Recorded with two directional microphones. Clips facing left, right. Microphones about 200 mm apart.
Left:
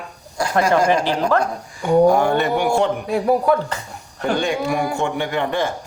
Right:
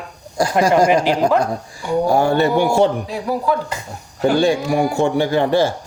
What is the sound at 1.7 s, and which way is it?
A man's voice, 30° right (ahead or behind).